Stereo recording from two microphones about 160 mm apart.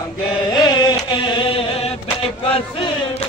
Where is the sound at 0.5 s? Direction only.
25° left (ahead or behind).